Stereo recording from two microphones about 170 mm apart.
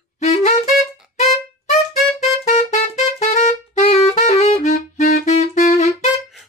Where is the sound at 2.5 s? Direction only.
40° left (ahead or behind).